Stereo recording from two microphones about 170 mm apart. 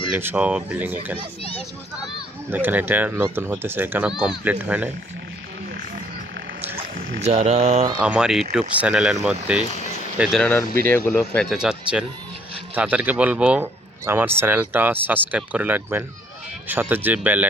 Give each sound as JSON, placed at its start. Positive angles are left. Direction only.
{"t": 0.2, "sound": "speech", "side_deg": -10}
{"t": 2.5, "sound": "speech", "side_deg": -10}
{"t": 7.2, "sound": "speech", "side_deg": -40}
{"t": 8.0, "sound": "speech", "side_deg": -5}
{"t": 10.3, "sound": "speech", "side_deg": 5}
{"t": 11.2, "sound": "speech", "side_deg": 0}